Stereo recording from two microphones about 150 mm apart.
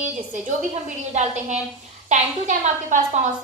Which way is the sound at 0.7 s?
50° right (ahead or behind).